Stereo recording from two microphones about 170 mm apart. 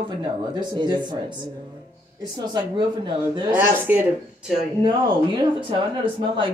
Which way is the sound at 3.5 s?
10° right (ahead or behind).